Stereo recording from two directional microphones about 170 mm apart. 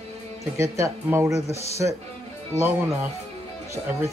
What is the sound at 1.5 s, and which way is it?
Speech, 40° left (ahead or behind).